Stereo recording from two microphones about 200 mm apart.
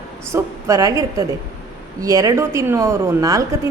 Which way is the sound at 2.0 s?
15° right (ahead or behind).